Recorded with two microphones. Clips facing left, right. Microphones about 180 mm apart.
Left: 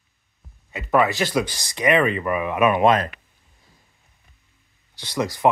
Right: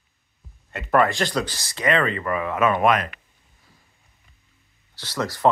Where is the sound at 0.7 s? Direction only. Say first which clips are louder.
Even; centre (ahead or behind).